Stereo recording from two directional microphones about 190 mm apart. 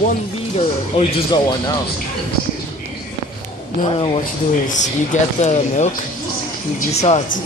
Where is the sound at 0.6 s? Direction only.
30° left (ahead or behind).